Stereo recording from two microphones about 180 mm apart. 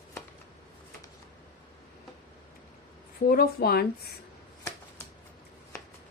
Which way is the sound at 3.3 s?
60° left (ahead or behind).